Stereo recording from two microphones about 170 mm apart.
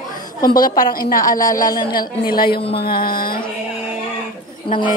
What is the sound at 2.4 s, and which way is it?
Speech, 30° left (ahead or behind).